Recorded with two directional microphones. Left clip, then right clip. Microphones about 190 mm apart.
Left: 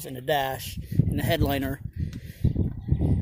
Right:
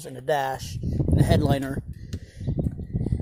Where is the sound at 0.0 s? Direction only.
20° left (ahead or behind).